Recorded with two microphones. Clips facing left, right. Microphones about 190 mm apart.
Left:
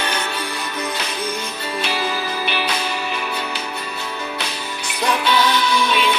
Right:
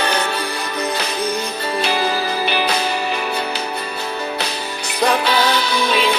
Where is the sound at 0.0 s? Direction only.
35° right (ahead or behind).